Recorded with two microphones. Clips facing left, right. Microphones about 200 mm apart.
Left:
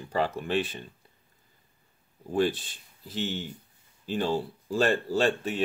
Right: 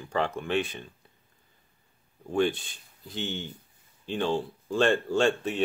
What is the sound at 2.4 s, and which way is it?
Speech, centre (ahead or behind).